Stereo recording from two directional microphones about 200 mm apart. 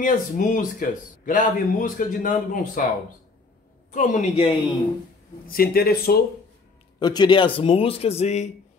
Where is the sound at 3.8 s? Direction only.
40° left (ahead or behind).